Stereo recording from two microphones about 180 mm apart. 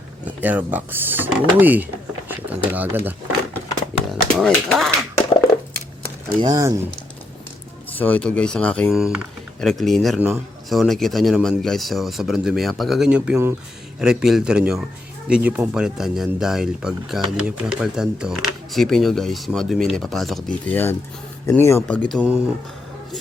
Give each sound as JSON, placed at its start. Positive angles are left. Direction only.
{"t": 0.3, "sound": "speech", "side_deg": -10}
{"t": 4.1, "sound": "speech", "side_deg": 0}
{"t": 6.2, "sound": "speech", "side_deg": -20}
{"t": 7.9, "sound": "speech", "side_deg": 10}